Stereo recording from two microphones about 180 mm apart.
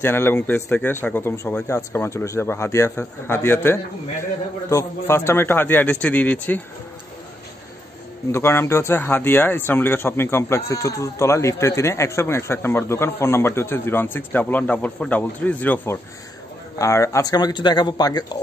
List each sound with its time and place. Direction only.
0.0 s speech: 10° left (ahead or behind)
8.3 s speech: 15° left (ahead or behind)